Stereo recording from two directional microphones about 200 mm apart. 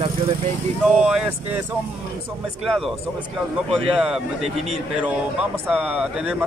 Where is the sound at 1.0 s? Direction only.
5° right (ahead or behind).